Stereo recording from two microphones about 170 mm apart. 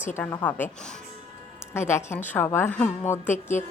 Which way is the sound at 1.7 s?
15° left (ahead or behind).